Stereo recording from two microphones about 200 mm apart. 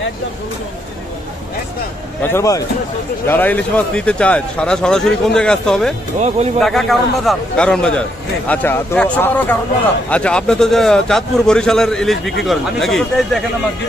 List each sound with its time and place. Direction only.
2.2 s speech: 15° left (ahead or behind)
6.1 s speech: 35° right (ahead or behind)
6.6 s speech: centre (ahead or behind)